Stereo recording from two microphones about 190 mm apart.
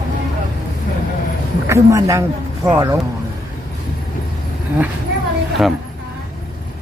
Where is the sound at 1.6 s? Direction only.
15° right (ahead or behind).